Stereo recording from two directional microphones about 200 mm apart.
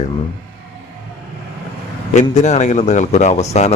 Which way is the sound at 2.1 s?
35° left (ahead or behind).